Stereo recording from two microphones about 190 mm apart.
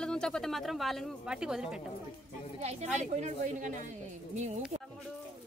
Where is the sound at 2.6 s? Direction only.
35° right (ahead or behind).